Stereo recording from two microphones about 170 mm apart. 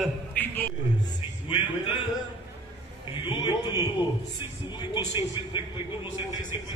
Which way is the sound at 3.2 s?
25° left (ahead or behind).